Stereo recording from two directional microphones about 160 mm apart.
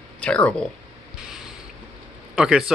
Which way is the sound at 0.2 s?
5° left (ahead or behind).